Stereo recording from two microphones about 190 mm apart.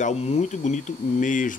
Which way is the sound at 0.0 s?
35° left (ahead or behind).